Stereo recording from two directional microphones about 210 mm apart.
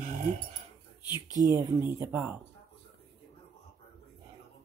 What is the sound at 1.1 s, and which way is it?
Speech, 20° left (ahead or behind).